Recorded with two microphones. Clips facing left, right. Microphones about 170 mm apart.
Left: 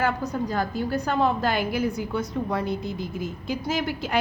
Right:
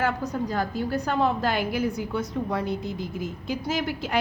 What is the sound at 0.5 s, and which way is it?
A woman's voice, 45° left (ahead or behind).